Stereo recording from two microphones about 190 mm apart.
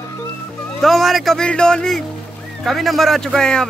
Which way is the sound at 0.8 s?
Centre (ahead or behind).